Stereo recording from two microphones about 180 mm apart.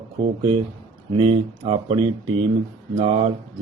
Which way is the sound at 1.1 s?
35° right (ahead or behind).